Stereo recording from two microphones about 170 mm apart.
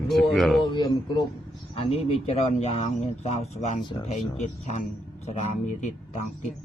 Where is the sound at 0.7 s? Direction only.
25° left (ahead or behind); by 6.3 s 40° left (ahead or behind).